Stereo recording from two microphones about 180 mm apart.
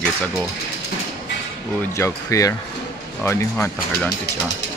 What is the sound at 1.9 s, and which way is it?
Speech, 15° left (ahead or behind).